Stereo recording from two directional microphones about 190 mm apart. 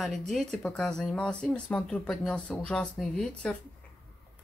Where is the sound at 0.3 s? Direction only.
5° left (ahead or behind).